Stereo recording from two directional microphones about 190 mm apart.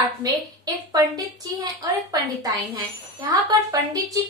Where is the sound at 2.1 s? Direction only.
20° right (ahead or behind).